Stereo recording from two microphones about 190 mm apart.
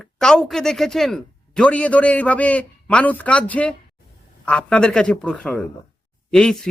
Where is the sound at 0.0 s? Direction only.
5° left (ahead or behind).